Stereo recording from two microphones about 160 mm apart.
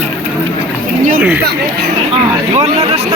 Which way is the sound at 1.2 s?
10° right (ahead or behind).